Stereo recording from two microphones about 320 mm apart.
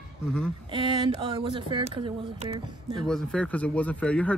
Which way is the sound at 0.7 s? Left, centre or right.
Centre.